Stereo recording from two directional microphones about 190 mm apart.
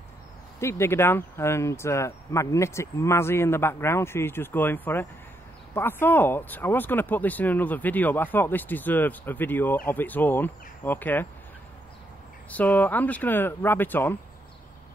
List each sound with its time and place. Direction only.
0.6 s speech: 15° left (ahead or behind)
12.4 s speech: 10° left (ahead or behind)